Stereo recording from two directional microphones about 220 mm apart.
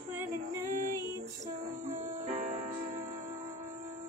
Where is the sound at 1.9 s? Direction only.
30° right (ahead or behind).